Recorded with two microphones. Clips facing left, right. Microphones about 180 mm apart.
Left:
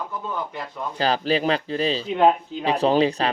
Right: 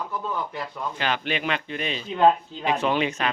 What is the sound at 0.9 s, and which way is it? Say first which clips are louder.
Speech: left 7 dB; 35° left (ahead or behind).